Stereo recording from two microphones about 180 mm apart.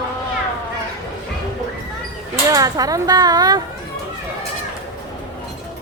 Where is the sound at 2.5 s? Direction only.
20° right (ahead or behind).